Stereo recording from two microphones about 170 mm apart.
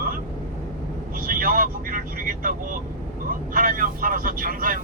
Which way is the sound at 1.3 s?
55° right (ahead or behind).